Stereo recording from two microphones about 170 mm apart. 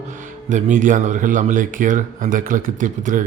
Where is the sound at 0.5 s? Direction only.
45° right (ahead or behind).